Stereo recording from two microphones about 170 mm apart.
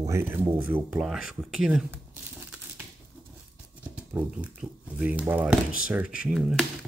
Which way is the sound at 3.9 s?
10° right (ahead or behind).